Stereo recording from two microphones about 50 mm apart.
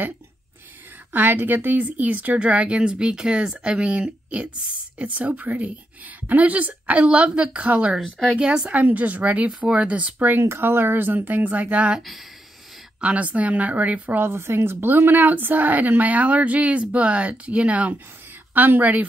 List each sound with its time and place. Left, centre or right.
1.1 s a woman's voice: right
8.4 s speech: centre
8.7 s a woman's voice: right
10.1 s a woman's voice: right
13.0 s a woman's voice: right
14.2 s a woman's voice: right